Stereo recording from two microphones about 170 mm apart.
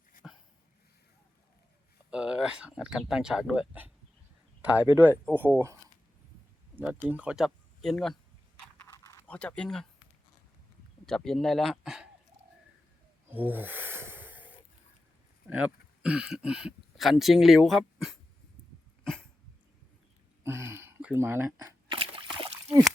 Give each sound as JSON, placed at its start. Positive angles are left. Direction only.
{"t": 0.2, "sound": "dog", "side_deg": 0}
{"t": 2.0, "sound": "speech", "side_deg": -5}
{"t": 6.7, "sound": "speech", "side_deg": -10}
{"t": 8.8, "sound": "a sound", "side_deg": 15}
{"t": 11.0, "sound": "speech", "side_deg": 5}
{"t": 13.3, "sound": "snort", "side_deg": -10}
{"t": 15.4, "sound": "speech", "side_deg": -10}
{"t": 19.0, "sound": "dog", "side_deg": 5}
{"t": 20.4, "sound": "camera", "side_deg": -15}
{"t": 21.9, "sound": "a sound", "side_deg": -35}